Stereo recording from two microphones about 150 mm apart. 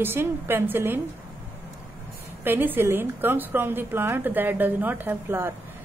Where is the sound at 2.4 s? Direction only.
15° right (ahead or behind).